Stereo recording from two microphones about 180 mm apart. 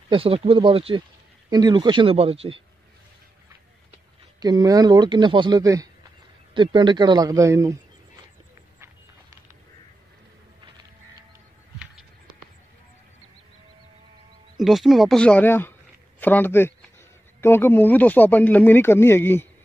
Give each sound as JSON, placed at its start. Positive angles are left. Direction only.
{"t": 0.1, "sound": "speech", "side_deg": -30}
{"t": 4.4, "sound": "speech", "side_deg": -20}
{"t": 14.6, "sound": "speech", "side_deg": 0}